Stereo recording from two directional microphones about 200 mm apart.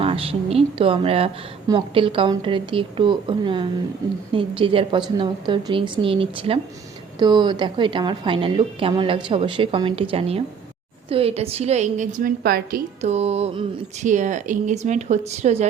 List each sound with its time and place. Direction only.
0.0 s a woman's voice: 30° right (ahead or behind); by 12.8 s 50° right (ahead or behind)
13.0 s a woman's voice: 30° right (ahead or behind)
14.0 s a woman's voice: 40° right (ahead or behind)